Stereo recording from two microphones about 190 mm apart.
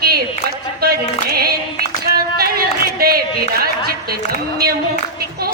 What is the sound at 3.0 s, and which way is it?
Speech, 55° right (ahead or behind).